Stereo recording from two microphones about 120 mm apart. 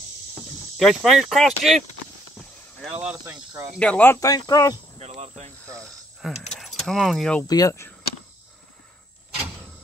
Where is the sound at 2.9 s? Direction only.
10° right (ahead or behind).